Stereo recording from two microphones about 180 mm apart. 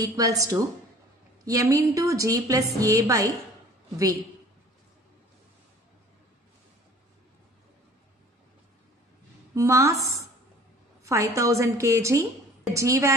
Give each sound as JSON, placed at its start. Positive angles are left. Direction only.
{"t": 0.0, "sound": "a woman's voice", "side_deg": -20}
{"t": 9.6, "sound": "a woman's voice", "side_deg": -15}
{"t": 11.1, "sound": "a woman's voice", "side_deg": -15}